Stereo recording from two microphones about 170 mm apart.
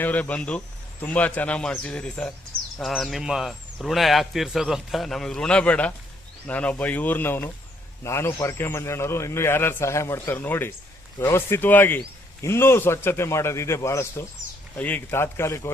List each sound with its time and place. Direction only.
0.0 s speech: 10° left (ahead or behind)